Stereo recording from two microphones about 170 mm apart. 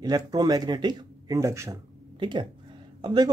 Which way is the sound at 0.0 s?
20° right (ahead or behind).